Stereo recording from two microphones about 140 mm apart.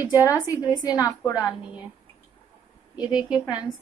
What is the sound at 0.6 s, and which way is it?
Speech, 25° left (ahead or behind).